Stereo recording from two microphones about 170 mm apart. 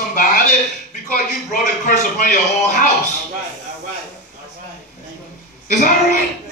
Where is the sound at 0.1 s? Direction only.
50° left (ahead or behind).